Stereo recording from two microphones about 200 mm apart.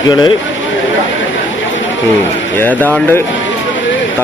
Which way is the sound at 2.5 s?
10° left (ahead or behind).